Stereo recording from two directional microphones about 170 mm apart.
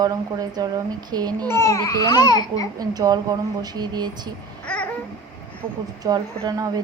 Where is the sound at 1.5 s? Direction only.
15° left (ahead or behind).